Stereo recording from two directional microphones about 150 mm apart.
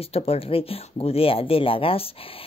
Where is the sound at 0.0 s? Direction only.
40° left (ahead or behind).